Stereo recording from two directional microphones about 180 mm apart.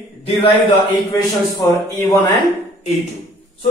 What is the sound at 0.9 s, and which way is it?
Speech, 15° left (ahead or behind).